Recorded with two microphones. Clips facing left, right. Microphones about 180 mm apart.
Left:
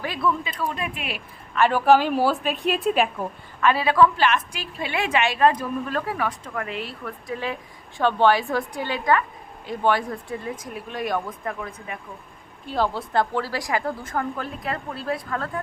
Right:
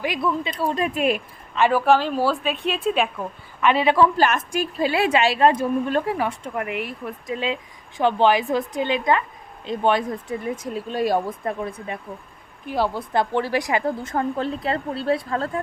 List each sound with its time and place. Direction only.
0.0 s speech: 15° right (ahead or behind)
0.4 s speech: 35° right (ahead or behind)
1.7 s a woman's voice: centre (ahead or behind)
3.6 s a woman's voice: 20° right (ahead or behind)
4.2 s a woman's voice: 45° right (ahead or behind)
4.9 s a woman's voice: 30° right (ahead or behind)
12.6 s a woman's voice: 15° right (ahead or behind); by 15.6 s 30° right (ahead or behind)